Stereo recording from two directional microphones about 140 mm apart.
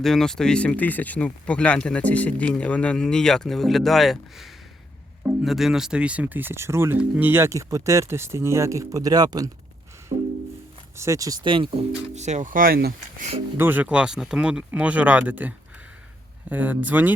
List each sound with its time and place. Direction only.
0.0 s speech: 5° left (ahead or behind); by 9.5 s 30° right (ahead or behind)
10.1 s music: 65° right (ahead or behind)
10.9 s speech: 20° right (ahead or behind); by 11.9 s 40° right (ahead or behind)
12.1 s speech: 55° right (ahead or behind); by 13.2 s 90° right
13.6 s speech: 15° right (ahead or behind)